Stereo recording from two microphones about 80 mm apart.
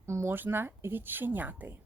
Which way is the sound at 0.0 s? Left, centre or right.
Right.